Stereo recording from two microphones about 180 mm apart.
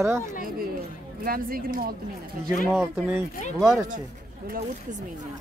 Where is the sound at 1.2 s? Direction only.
55° right (ahead or behind).